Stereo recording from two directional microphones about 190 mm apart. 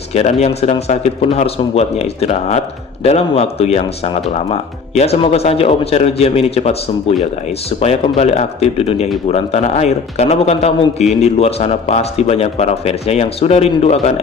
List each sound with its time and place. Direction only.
0.1 s a man's voice: 35° left (ahead or behind)